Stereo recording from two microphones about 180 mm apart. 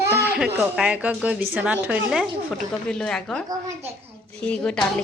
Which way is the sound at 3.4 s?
20° right (ahead or behind).